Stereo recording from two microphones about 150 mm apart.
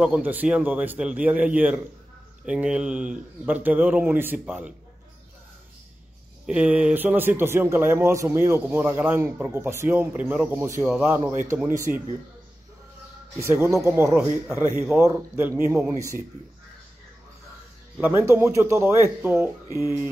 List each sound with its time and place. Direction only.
0.0 s speech: 10° right (ahead or behind)
6.4 s speech: 5° right (ahead or behind)
13.4 s speech: 15° right (ahead or behind)
14.2 s speech: 25° left (ahead or behind)
15.0 s speech: 20° right (ahead or behind)
17.9 s speech: 10° right (ahead or behind)